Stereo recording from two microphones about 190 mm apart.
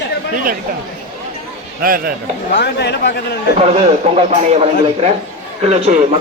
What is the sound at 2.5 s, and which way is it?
Speech, 65° left (ahead or behind).